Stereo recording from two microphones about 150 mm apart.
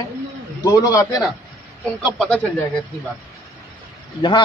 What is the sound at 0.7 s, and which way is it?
Speech, 25° left (ahead or behind).